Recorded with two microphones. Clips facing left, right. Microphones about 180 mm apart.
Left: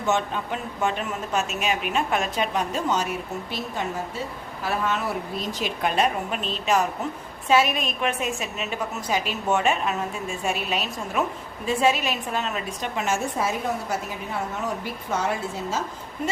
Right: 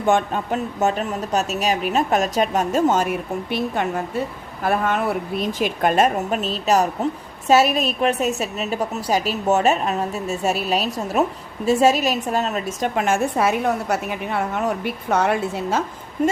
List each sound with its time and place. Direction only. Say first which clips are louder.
0.0 s a woman's voice: right 5 dB; 50° right (ahead or behind); by 15.8 s 65° right (ahead or behind)